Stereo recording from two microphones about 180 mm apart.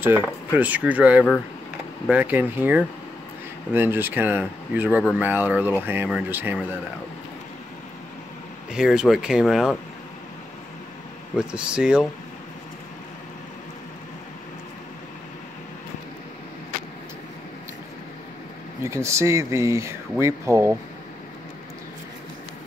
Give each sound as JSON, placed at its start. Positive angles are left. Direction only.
{"t": 0.0, "sound": "speech", "side_deg": -10}
{"t": 8.7, "sound": "speech", "side_deg": -5}
{"t": 11.3, "sound": "speech", "side_deg": -5}
{"t": 18.9, "sound": "speech", "side_deg": -15}